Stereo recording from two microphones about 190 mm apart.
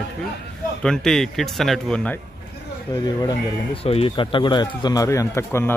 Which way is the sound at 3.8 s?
30° left (ahead or behind).